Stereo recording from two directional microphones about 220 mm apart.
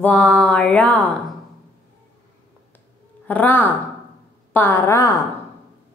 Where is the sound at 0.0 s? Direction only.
5° left (ahead or behind).